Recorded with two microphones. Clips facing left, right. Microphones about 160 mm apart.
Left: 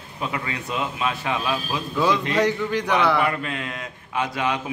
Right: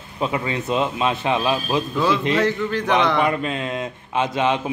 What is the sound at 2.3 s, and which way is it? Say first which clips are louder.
Speech: right 1 dB; 15° left (ahead or behind).